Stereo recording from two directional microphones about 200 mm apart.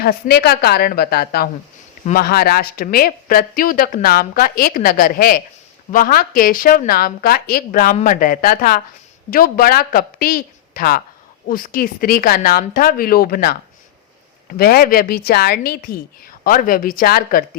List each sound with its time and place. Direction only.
0.0 s speech: 50° left (ahead or behind)